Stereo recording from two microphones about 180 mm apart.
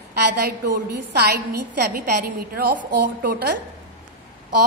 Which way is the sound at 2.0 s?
55° right (ahead or behind).